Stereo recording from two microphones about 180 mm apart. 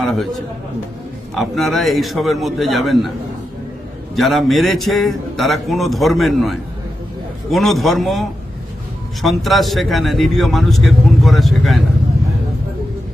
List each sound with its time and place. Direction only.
0.0 s a sound: 5° left (ahead or behind)
1.4 s a man's voice: centre (ahead or behind)
4.1 s a man's voice: centre (ahead or behind)